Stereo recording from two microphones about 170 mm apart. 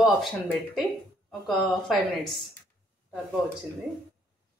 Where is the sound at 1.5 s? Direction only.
Centre (ahead or behind).